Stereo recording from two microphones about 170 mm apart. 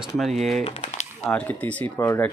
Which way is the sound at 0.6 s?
40° left (ahead or behind).